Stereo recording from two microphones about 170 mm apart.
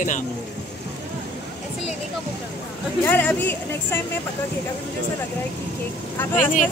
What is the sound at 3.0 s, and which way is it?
Speech, 10° left (ahead or behind).